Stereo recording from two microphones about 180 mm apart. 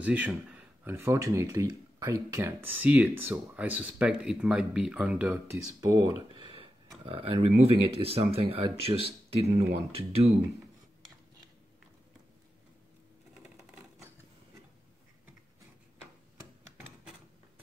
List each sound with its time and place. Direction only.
0.0 s speech: 10° right (ahead or behind); by 10.3 s 35° right (ahead or behind)